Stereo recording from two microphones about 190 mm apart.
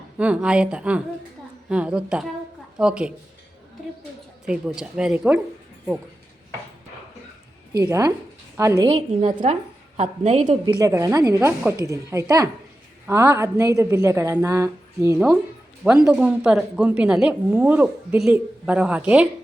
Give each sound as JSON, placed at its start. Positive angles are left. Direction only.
{"t": 0.2, "sound": "speech", "side_deg": -5}
{"t": 4.4, "sound": "speech", "side_deg": -5}
{"t": 7.8, "sound": "a woman's voice", "side_deg": -20}
{"t": 8.9, "sound": "a woman's voice", "side_deg": -35}
{"t": 10.5, "sound": "a woman's voice", "side_deg": -20}